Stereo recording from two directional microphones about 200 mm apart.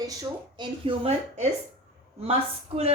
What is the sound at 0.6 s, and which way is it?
A man's voice, 25° right (ahead or behind).